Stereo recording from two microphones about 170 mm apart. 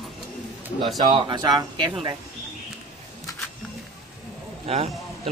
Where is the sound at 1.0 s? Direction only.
25° right (ahead or behind).